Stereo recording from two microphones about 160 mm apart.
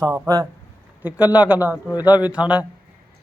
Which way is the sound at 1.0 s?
10° right (ahead or behind).